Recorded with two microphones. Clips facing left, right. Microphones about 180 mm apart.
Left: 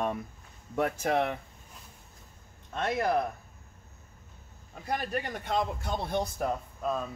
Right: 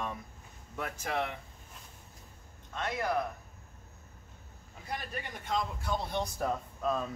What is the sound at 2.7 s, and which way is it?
Speech, 60° left (ahead or behind).